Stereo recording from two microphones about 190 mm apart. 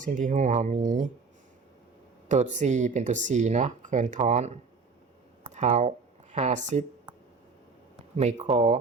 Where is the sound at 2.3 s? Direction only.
40° right (ahead or behind).